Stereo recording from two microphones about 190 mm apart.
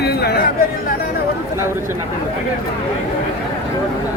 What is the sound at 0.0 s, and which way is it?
Chatter, 60° left (ahead or behind).